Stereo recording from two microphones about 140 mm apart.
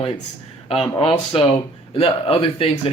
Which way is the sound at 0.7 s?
40° left (ahead or behind).